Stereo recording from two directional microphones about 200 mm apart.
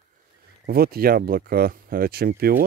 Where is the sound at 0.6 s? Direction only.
50° right (ahead or behind).